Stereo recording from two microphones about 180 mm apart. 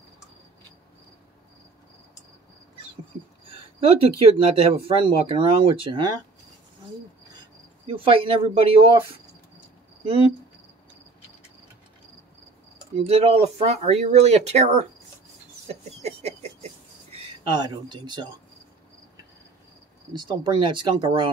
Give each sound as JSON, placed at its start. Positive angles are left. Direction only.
{"t": 3.4, "sound": "a sound", "side_deg": -30}
{"t": 4.8, "sound": "speech", "side_deg": -30}
{"t": 7.8, "sound": "speech", "side_deg": -30}
{"t": 10.0, "sound": "speech", "side_deg": -30}
{"t": 12.9, "sound": "speech", "side_deg": -35}
{"t": 15.6, "sound": "a sound", "side_deg": -35}
{"t": 17.1, "sound": "speech", "side_deg": -25}
{"t": 20.1, "sound": "speech", "side_deg": -25}